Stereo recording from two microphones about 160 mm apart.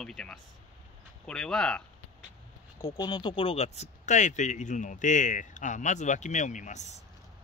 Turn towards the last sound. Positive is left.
turn(degrees=50)  # may be behind; listen again after turning